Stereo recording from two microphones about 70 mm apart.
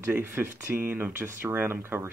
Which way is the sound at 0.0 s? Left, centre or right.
Right.